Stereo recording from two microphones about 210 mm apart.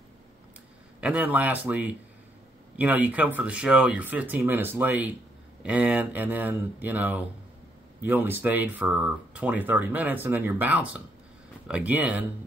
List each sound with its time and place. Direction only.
1.0 s speech: 5° right (ahead or behind)